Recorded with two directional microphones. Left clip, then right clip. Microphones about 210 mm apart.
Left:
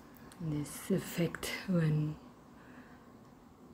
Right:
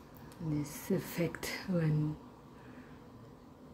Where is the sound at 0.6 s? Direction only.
10° left (ahead or behind).